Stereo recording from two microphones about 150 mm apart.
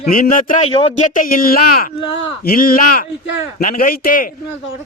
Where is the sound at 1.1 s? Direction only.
70° left (ahead or behind).